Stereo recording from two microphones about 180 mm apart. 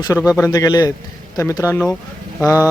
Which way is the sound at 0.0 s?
20° left (ahead or behind).